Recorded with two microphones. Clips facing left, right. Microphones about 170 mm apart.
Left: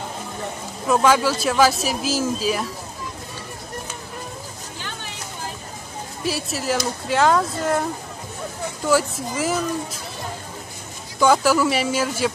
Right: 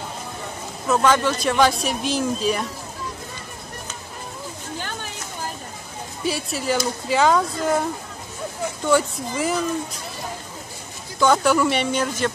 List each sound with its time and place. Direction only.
0.8 s speech: 10° left (ahead or behind)
4.7 s a sound: 50° right (ahead or behind)
6.2 s speech: centre (ahead or behind)
8.8 s speech: 5° left (ahead or behind)
11.1 s speech: 5° left (ahead or behind)